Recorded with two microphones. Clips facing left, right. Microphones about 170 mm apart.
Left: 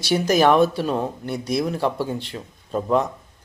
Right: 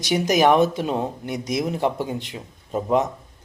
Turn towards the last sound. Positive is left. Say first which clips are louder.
# even
turn(degrees=-15)  # may be behind; listen again after turning